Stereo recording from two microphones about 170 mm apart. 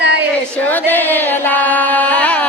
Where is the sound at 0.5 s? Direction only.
10° left (ahead or behind).